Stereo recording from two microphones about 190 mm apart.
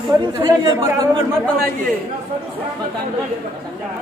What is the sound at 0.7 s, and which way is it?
Speech, 15° right (ahead or behind).